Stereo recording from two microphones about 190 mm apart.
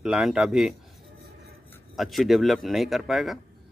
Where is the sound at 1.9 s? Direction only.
Centre (ahead or behind).